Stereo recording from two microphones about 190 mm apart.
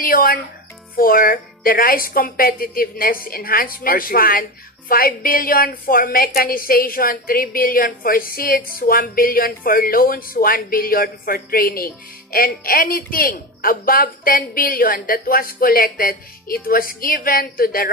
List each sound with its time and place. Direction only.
0.0 s speech: 50° left (ahead or behind)